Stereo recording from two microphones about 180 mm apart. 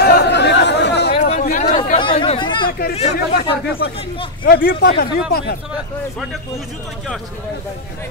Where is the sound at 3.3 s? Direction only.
65° left (ahead or behind).